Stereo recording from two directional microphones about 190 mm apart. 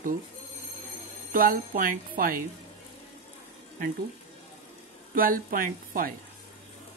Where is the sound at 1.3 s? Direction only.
50° right (ahead or behind).